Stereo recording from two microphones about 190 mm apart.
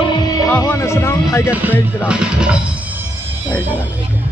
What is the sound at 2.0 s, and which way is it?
Speech, 5° right (ahead or behind).